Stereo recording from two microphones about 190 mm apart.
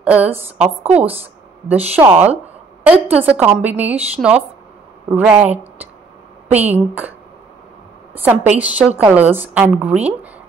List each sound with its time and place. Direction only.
0.0 s a woman's voice: 10° right (ahead or behind)
1.7 s a woman's voice: 10° right (ahead or behind)
8.2 s a woman's voice: 10° right (ahead or behind)